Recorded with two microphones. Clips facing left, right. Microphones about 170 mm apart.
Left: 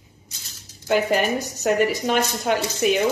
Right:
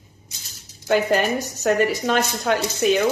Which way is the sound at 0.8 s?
5° left (ahead or behind).